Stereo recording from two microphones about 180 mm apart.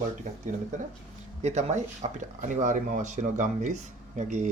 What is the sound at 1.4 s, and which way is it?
Speech, 40° right (ahead or behind).